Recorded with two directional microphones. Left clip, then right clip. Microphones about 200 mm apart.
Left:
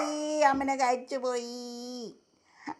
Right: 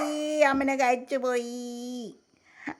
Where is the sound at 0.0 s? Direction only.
10° right (ahead or behind).